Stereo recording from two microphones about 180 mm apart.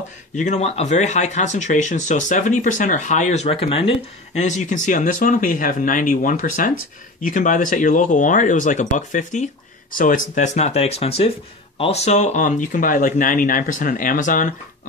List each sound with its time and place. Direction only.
0.4 s speech: 40° left (ahead or behind)